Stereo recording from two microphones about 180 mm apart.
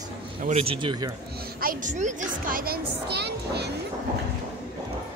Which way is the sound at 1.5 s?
50° right (ahead or behind).